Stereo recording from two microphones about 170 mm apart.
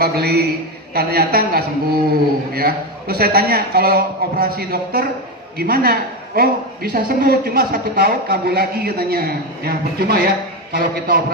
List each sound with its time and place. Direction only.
0.0 s a man's voice: 65° right (ahead or behind)